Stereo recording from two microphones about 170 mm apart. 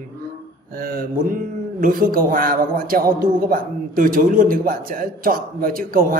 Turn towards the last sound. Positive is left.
turn(degrees=-55)  # may be behind; listen again after turning